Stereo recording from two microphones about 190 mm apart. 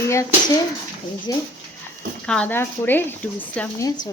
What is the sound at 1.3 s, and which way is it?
Speech, 20° left (ahead or behind).